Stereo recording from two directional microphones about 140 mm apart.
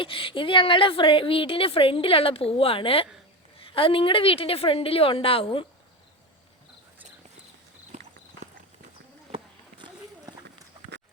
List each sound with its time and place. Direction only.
0.0 s a woman's voice: 40° left (ahead or behind)
7.9 s clip-clop: 60° right (ahead or behind)
9.3 s a sound: 35° right (ahead or behind)